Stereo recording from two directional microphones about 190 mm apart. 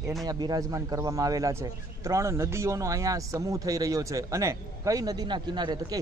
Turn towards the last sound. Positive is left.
turn(degrees=-20)  # may be behind; listen again after turning